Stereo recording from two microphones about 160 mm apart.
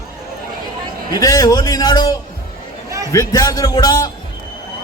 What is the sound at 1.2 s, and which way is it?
A man's voice, 20° left (ahead or behind).